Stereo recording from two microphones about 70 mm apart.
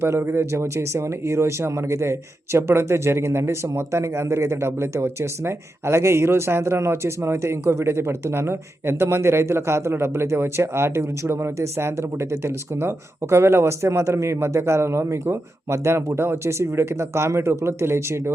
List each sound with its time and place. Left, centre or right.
0.0 s speech: right